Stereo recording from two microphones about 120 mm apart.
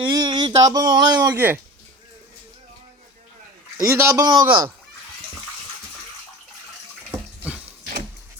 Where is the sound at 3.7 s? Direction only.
25° right (ahead or behind).